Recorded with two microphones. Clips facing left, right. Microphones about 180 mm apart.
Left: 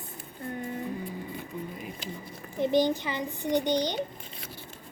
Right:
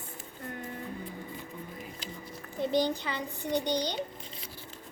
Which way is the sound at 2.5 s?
20° left (ahead or behind).